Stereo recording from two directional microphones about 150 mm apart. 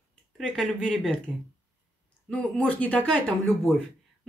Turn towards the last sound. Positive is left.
turn(degrees=5)  # may be behind; listen again after turning